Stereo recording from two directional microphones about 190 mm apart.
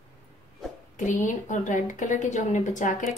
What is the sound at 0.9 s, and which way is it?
A woman's voice, 40° left (ahead or behind).